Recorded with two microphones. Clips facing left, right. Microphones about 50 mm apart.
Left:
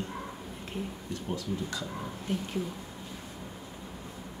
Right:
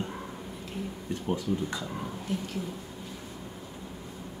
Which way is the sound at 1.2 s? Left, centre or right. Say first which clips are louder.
Right 5 dB; right.